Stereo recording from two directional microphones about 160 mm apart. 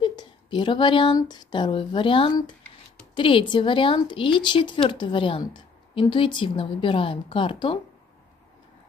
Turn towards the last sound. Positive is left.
turn(degrees=30)  # may be behind; listen again after turning